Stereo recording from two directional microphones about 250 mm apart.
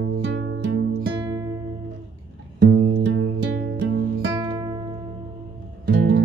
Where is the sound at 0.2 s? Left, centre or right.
Right.